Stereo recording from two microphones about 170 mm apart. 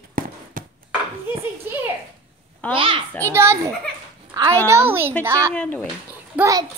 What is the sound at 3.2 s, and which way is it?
Speech, 15° right (ahead or behind).